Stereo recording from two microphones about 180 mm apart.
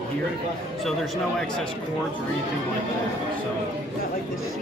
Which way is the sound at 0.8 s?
Centre (ahead or behind).